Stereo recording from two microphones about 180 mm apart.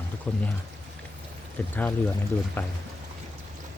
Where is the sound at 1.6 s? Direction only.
10° left (ahead or behind).